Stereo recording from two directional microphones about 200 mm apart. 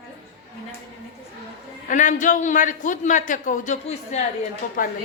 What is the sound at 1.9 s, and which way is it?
A woman's voice, 40° left (ahead or behind).